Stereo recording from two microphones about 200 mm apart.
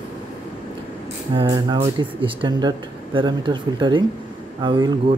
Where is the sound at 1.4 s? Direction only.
20° right (ahead or behind).